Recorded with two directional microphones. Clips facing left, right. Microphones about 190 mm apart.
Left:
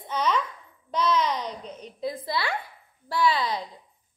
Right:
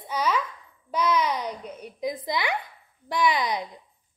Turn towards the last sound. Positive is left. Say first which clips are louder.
# even
turn(degrees=-15)  # may be behind; listen again after turning